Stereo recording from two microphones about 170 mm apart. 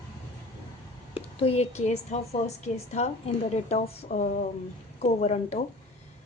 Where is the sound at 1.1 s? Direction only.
35° left (ahead or behind).